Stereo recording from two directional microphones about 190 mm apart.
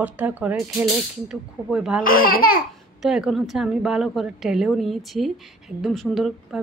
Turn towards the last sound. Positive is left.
turn(degrees=0)  # may be behind; listen again after turning